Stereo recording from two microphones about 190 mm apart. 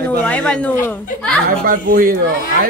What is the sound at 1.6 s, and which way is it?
Speech, 50° right (ahead or behind).